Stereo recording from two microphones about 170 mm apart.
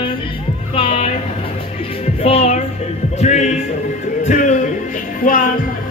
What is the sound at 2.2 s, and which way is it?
Speech, 35° left (ahead or behind).